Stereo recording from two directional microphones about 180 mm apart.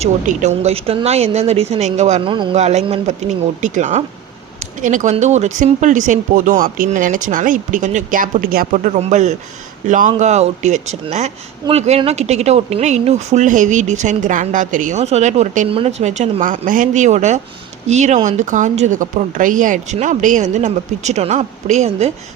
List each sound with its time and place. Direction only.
0.0 s speech: 40° right (ahead or behind)
2.3 s speech: 25° right (ahead or behind)
2.6 s speech: 40° right (ahead or behind)